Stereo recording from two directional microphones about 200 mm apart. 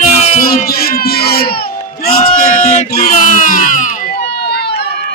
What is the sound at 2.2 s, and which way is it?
Speech, 35° left (ahead or behind).